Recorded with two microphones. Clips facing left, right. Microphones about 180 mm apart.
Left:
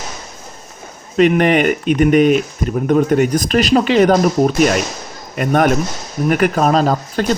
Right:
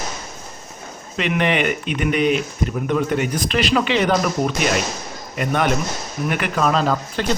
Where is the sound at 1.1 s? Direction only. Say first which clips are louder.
Left 8 dB; 45° left (ahead or behind).